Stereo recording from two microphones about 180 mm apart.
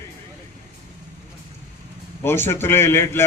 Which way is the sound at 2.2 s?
10° left (ahead or behind).